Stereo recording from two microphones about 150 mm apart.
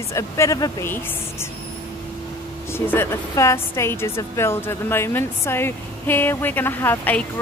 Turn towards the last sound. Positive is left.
turn(degrees=15)  # may be behind; listen again after turning